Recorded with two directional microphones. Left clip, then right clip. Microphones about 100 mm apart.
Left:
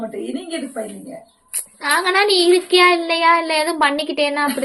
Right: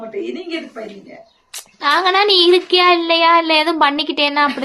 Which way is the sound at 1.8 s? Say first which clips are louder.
Right 3 dB; 25° right (ahead or behind).